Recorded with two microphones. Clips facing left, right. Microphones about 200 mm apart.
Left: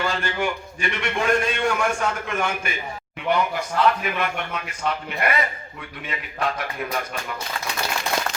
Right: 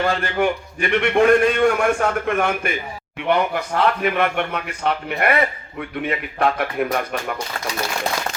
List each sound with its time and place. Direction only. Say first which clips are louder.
0.0 s a man's voice: right 5 dB; 60° right (ahead or behind)